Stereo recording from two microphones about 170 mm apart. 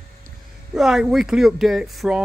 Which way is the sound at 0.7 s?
Centre (ahead or behind).